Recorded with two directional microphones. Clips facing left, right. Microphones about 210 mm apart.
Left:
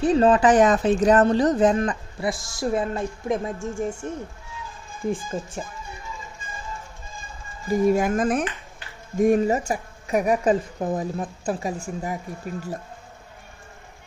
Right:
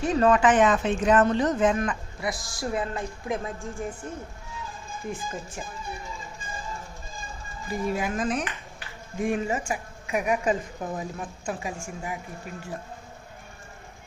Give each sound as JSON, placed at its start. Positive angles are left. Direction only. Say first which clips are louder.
{"t": 0.0, "sound": "speech", "louder": "left 4 dB", "side_deg": 30}
{"t": 5.3, "sound": "speech", "louder": "left 6 dB", "side_deg": 30}
{"t": 7.7, "sound": "speech", "louder": "left 8 dB", "side_deg": 45}